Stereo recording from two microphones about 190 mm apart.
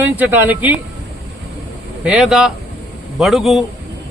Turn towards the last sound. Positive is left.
turn(degrees=0)  # may be behind; listen again after turning